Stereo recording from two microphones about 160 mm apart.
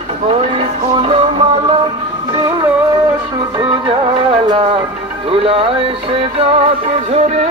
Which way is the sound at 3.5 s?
30° right (ahead or behind).